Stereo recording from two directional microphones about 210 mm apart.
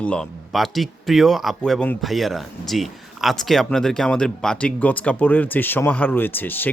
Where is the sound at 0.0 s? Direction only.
5° left (ahead or behind).